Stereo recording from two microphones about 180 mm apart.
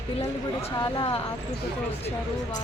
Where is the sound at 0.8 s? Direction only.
25° left (ahead or behind).